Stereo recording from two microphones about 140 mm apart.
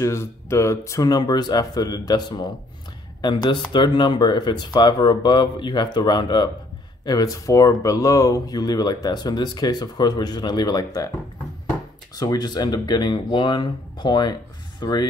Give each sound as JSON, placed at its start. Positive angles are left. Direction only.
{"t": 0.0, "sound": "speech", "side_deg": 20}
{"t": 12.2, "sound": "speech", "side_deg": 30}